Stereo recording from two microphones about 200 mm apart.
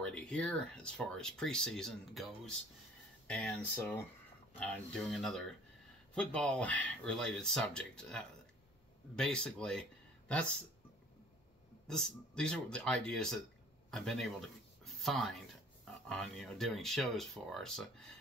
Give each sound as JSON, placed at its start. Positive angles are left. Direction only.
{"t": 0.0, "sound": "speech", "side_deg": 5}
{"t": 11.9, "sound": "speech", "side_deg": 5}